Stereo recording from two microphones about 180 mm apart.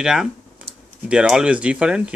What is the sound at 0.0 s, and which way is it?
Speech, 5° right (ahead or behind).